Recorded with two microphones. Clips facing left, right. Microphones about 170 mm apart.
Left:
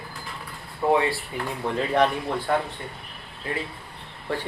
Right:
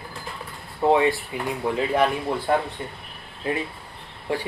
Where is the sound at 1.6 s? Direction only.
10° right (ahead or behind).